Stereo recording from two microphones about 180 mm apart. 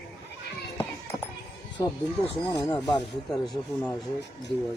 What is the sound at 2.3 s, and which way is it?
Speech, 20° left (ahead or behind).